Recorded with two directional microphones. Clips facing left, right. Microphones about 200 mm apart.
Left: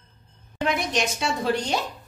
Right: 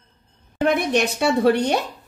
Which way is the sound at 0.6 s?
55° right (ahead or behind).